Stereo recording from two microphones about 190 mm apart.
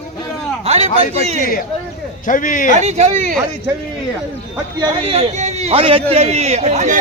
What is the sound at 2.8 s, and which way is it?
Speech, 35° right (ahead or behind).